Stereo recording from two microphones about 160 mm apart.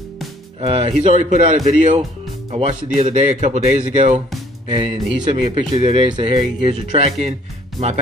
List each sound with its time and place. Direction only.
0.6 s speech: 35° right (ahead or behind)
1.3 s speech: 50° right (ahead or behind)
2.5 s speech: 40° right (ahead or behind)
4.6 s speech: 30° right (ahead or behind)